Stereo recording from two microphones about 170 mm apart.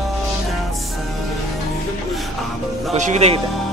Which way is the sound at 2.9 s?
40° right (ahead or behind).